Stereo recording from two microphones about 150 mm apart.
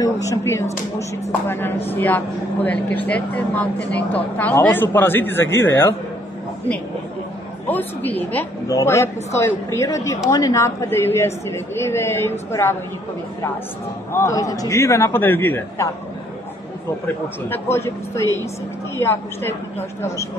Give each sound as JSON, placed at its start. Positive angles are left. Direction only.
{"t": 0.0, "sound": "a man's voice", "side_deg": 20}
{"t": 7.6, "sound": "speech", "side_deg": 10}
{"t": 14.1, "sound": "a man's voice", "side_deg": 20}
{"t": 17.5, "sound": "speech", "side_deg": 15}